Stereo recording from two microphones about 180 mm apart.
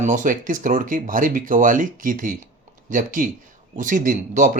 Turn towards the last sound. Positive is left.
turn(degrees=-45)  # may be behind; listen again after turning